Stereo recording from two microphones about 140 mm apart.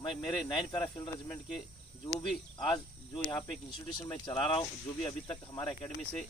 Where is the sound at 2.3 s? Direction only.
5° left (ahead or behind).